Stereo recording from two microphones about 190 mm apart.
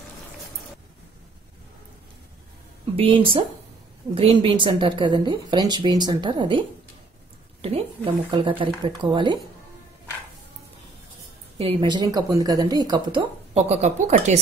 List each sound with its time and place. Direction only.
3.0 s a woman's voice: 30° right (ahead or behind)
7.6 s a woman's voice: 30° right (ahead or behind)
11.5 s a woman's voice: 25° right (ahead or behind)